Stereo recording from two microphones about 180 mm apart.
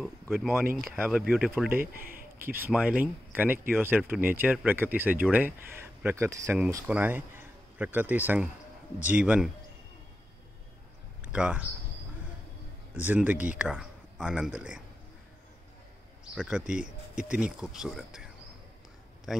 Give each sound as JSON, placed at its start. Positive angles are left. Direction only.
{"t": 0.0, "sound": "speech", "side_deg": 0}
{"t": 1.8, "sound": "speech", "side_deg": -55}
{"t": 2.4, "sound": "speech", "side_deg": -10}
{"t": 11.3, "sound": "speech", "side_deg": -5}
{"t": 12.9, "sound": "speech", "side_deg": -10}
{"t": 16.3, "sound": "speech", "side_deg": -5}
{"t": 16.6, "sound": "speech", "side_deg": -45}
{"t": 17.2, "sound": "a man's voice", "side_deg": -5}